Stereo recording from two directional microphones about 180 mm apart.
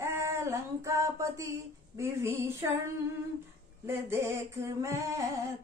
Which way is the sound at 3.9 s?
15° right (ahead or behind).